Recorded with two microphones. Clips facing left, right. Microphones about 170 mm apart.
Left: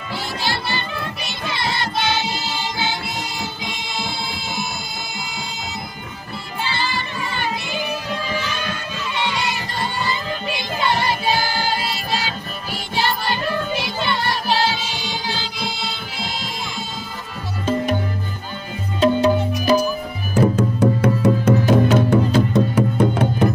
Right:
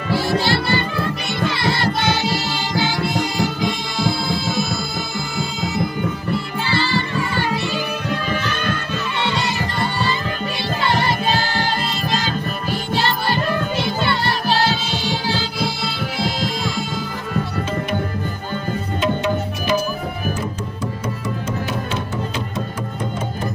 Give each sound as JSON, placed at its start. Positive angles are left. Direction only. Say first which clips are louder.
{"t": 2.0, "sound": "music", "louder": "right 2 dB", "side_deg": 20}
{"t": 8.3, "sound": "music", "louder": "right 3 dB", "side_deg": -50}
{"t": 9.2, "sound": "music", "louder": "right 1 dB", "side_deg": 15}
{"t": 10.8, "sound": "music", "louder": "right 1 dB", "side_deg": 15}
{"t": 18.9, "sound": "music", "louder": "left 6 dB", "side_deg": 35}
{"t": 20.5, "sound": "music", "louder": "left 9 dB", "side_deg": 65}
{"t": 21.6, "sound": "music", "louder": "left 10 dB", "side_deg": 45}
{"t": 22.5, "sound": "music", "louder": "left 9 dB", "side_deg": 65}